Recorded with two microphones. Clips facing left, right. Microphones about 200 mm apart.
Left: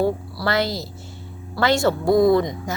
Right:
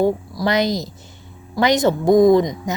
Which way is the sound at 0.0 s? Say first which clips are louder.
Right 3 dB; 15° right (ahead or behind).